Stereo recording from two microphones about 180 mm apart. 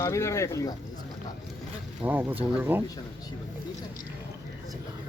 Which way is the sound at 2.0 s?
10° right (ahead or behind).